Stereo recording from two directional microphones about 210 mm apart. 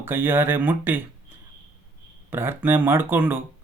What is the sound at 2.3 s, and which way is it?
Speech, 10° right (ahead or behind).